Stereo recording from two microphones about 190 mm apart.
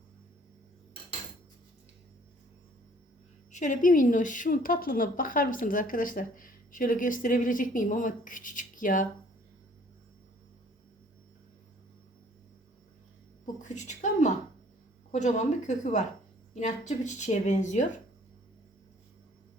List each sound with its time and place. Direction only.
3.5 s a woman's voice: 40° left (ahead or behind)
13.4 s a sound: 40° left (ahead or behind)
15.1 s speech: 40° left (ahead or behind)